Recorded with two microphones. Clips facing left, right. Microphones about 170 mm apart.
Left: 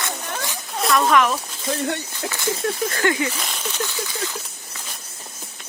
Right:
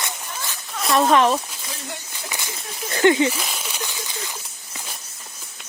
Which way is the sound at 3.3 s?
5° right (ahead or behind).